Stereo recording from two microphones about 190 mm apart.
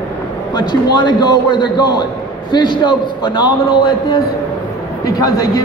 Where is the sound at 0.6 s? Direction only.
25° left (ahead or behind).